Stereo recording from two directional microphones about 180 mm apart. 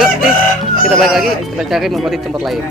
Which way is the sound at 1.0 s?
Centre (ahead or behind).